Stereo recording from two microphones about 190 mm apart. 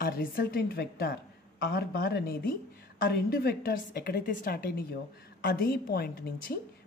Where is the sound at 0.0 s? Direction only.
50° left (ahead or behind).